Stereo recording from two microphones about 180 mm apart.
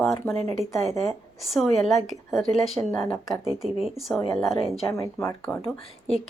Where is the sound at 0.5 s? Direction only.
Centre (ahead or behind).